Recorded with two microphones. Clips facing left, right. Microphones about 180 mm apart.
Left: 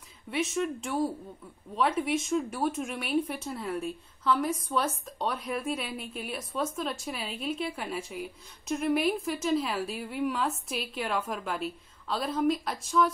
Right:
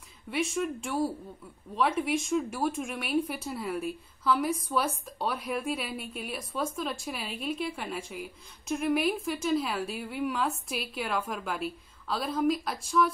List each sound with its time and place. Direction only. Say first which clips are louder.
0.3 s a woman's voice: even; centre (ahead or behind)